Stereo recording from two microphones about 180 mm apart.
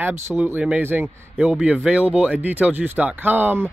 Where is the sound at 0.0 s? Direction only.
10° right (ahead or behind).